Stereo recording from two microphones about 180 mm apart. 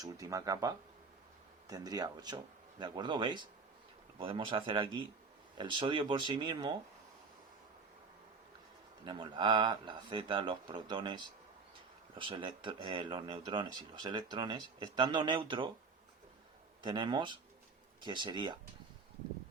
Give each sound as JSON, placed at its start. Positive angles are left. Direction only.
{"t": 0.0, "sound": "speech", "side_deg": -20}
{"t": 9.0, "sound": "speech", "side_deg": -25}
{"t": 16.8, "sound": "speech", "side_deg": -25}